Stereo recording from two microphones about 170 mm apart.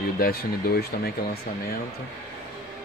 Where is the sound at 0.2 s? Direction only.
65° left (ahead or behind).